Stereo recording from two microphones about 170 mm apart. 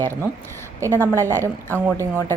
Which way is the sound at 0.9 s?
15° left (ahead or behind).